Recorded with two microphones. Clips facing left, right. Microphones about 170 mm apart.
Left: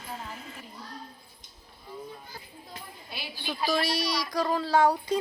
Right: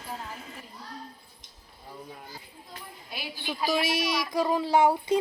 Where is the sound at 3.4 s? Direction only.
15° right (ahead or behind).